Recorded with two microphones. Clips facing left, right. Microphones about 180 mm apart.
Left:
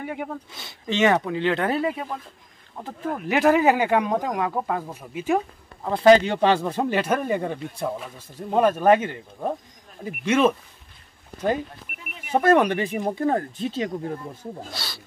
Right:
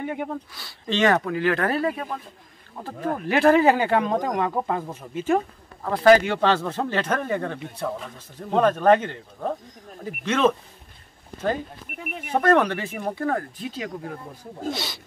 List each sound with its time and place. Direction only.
0.0 s speech: 5° left (ahead or behind)
0.5 s speech: 20° left (ahead or behind)
3.3 s speech: 10° left (ahead or behind)
5.1 s speech: 15° left (ahead or behind)
12.3 s speech: 10° left (ahead or behind); by 14.5 s 25° left (ahead or behind)
14.7 s speech: 20° right (ahead or behind)